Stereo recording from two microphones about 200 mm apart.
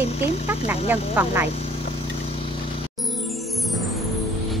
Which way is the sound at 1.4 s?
30° left (ahead or behind).